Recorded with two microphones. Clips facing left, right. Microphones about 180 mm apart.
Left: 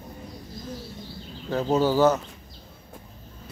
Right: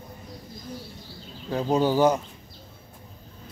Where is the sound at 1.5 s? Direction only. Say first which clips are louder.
Even; 15° right (ahead or behind).